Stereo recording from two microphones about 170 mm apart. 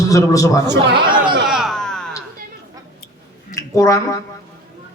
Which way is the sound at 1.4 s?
Centre (ahead or behind).